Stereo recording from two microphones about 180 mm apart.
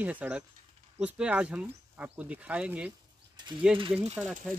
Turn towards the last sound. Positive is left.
turn(degrees=-5)  # may be behind; listen again after turning